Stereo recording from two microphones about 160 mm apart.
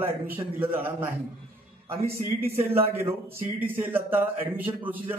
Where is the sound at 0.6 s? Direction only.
15° right (ahead or behind).